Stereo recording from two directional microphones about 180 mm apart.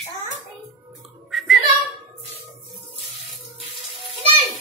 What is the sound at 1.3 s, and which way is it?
Child singing, centre (ahead or behind).